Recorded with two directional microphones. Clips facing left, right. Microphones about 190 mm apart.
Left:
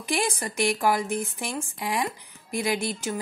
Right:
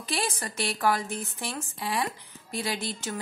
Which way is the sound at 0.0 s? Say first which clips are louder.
Left 4 dB; 15° left (ahead or behind).